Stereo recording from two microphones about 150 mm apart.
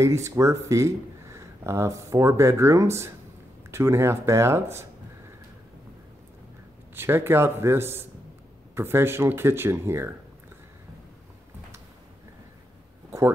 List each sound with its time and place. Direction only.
0.0 s speech: 20° right (ahead or behind)
7.0 s speech: 15° right (ahead or behind)